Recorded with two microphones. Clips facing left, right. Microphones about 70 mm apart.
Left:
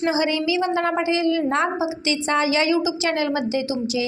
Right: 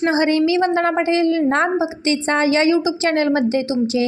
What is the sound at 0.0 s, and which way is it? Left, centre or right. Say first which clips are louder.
A woman's voice: right 5 dB; right.